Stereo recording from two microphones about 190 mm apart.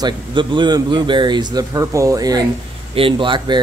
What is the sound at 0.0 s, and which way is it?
Speech, 25° right (ahead or behind).